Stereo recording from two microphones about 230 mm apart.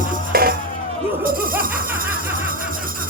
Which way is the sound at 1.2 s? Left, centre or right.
Right.